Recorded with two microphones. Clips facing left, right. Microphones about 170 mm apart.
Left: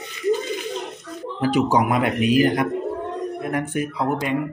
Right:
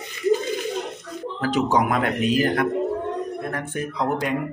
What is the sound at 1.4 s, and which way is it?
A man's voice, 10° left (ahead or behind).